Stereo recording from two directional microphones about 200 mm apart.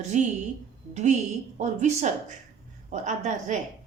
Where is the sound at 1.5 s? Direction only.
35° right (ahead or behind).